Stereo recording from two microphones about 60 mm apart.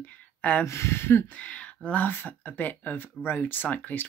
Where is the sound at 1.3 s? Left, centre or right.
Left.